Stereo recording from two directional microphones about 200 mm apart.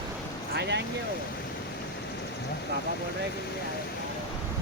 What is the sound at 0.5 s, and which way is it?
Vehicle, 55° right (ahead or behind).